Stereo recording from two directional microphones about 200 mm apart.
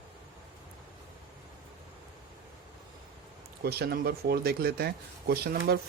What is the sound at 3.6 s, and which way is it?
Speech, 50° right (ahead or behind).